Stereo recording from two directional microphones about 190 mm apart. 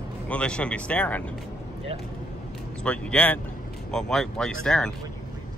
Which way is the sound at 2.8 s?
5° left (ahead or behind).